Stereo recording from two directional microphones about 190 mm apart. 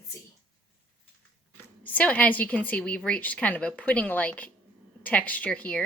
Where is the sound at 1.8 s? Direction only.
10° left (ahead or behind).